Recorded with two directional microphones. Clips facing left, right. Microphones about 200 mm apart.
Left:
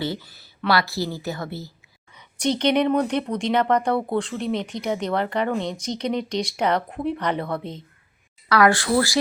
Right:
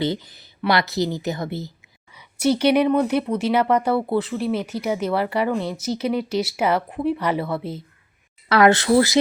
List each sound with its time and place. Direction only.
0.0 s a woman's voice: 20° right (ahead or behind)
8.4 s a woman's voice: 25° right (ahead or behind)